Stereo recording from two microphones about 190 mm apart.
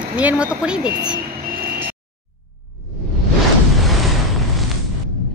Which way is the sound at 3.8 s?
Centre (ahead or behind).